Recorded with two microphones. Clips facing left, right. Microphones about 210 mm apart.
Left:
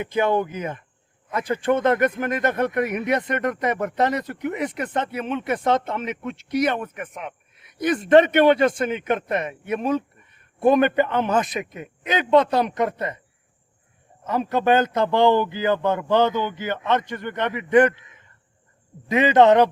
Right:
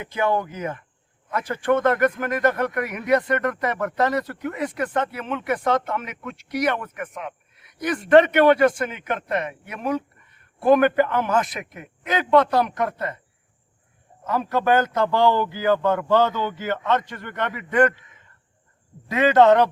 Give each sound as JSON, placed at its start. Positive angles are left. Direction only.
{"t": 0.0, "sound": "speech", "side_deg": 20}
{"t": 14.3, "sound": "speech", "side_deg": 20}
{"t": 19.0, "sound": "a man's voice", "side_deg": 20}